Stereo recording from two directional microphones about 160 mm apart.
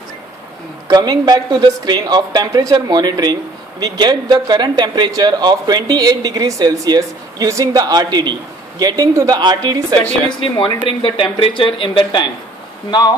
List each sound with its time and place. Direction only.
0.8 s speech: 25° right (ahead or behind)
10.4 s speech: 30° left (ahead or behind)